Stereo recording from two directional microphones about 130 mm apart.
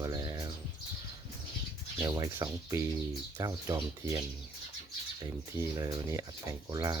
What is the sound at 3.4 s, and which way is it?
Speech, 30° right (ahead or behind).